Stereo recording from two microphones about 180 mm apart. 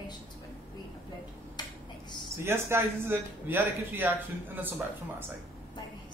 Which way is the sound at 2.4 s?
15° right (ahead or behind).